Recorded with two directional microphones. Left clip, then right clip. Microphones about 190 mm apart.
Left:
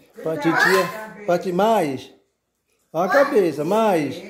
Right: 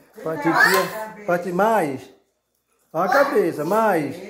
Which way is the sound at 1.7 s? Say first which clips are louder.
Left 1 dB; 25° left (ahead or behind).